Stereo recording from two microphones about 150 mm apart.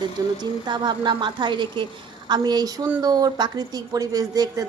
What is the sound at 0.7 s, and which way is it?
A woman's voice, 30° right (ahead or behind).